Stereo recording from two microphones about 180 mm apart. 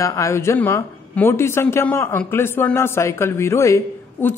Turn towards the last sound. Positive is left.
turn(degrees=15)  # may be behind; listen again after turning